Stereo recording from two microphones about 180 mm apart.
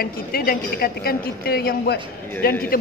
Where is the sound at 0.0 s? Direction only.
55° left (ahead or behind).